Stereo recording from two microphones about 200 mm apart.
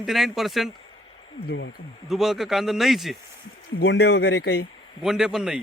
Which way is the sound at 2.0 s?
Centre (ahead or behind).